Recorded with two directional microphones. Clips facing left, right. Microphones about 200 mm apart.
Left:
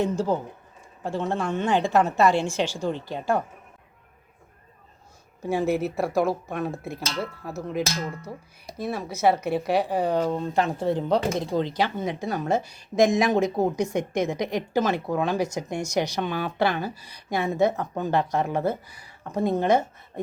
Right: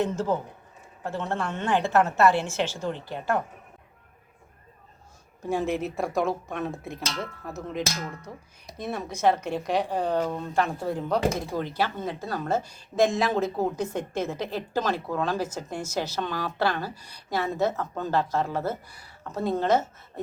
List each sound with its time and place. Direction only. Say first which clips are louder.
0.0 s a woman's voice: left 2 dB; 10° left (ahead or behind)
5.4 s a woman's voice: left 3 dB; 5° left (ahead or behind)
19.0 s a sound: left 5 dB; 15° left (ahead or behind)
19.5 s a woman's voice: left 1 dB; 15° left (ahead or behind)